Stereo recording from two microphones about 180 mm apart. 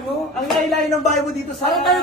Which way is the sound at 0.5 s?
Centre (ahead or behind).